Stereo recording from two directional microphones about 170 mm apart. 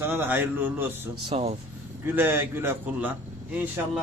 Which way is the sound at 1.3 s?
35° right (ahead or behind).